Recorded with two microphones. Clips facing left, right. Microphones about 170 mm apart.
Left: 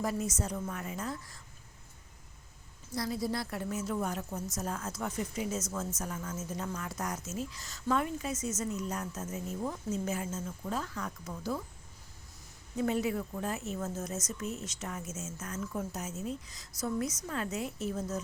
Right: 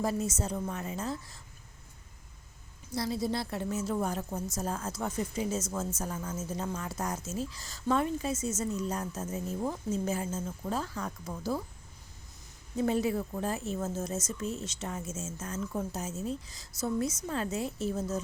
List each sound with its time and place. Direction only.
0.0 s a woman's voice: 30° right (ahead or behind)
2.9 s a woman's voice: 25° right (ahead or behind)
12.7 s a woman's voice: 30° right (ahead or behind)